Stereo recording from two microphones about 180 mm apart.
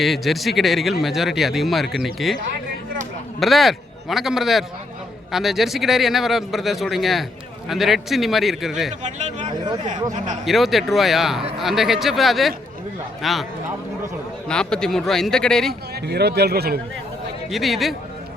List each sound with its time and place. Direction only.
0.0 s a man's voice: centre (ahead or behind)
3.4 s a man's voice: centre (ahead or behind)
9.8 s speech: 45° right (ahead or behind)
10.4 s a man's voice: centre (ahead or behind)
14.4 s a man's voice: 5° left (ahead or behind)
16.0 s a man's voice: 65° right (ahead or behind)
17.5 s a man's voice: centre (ahead or behind)